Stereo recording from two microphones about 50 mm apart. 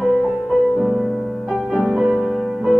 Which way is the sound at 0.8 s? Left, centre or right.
Centre.